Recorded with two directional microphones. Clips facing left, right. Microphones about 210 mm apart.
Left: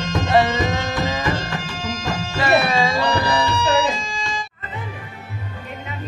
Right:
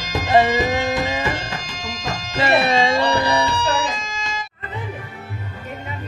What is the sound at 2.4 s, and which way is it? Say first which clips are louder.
Music: right 1 dB; 25° right (ahead or behind).